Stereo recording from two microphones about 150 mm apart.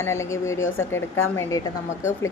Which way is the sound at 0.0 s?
20° left (ahead or behind).